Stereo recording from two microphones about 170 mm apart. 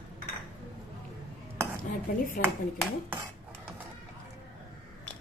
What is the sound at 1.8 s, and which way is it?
Speech, 55° left (ahead or behind).